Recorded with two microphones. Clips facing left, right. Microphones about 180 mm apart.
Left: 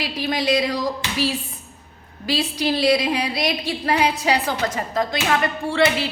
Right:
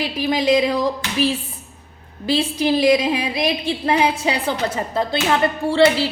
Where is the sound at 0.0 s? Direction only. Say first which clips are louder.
Right 4 dB; 20° right (ahead or behind).